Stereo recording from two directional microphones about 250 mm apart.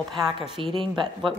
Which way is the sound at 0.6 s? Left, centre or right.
Right.